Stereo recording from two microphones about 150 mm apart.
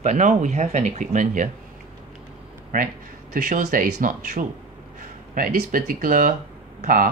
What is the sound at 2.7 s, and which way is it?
Speech, 65° right (ahead or behind).